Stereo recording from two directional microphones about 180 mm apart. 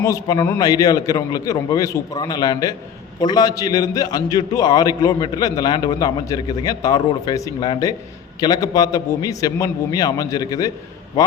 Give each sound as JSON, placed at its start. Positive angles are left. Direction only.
{"t": 0.0, "sound": "a man's voice", "side_deg": 20}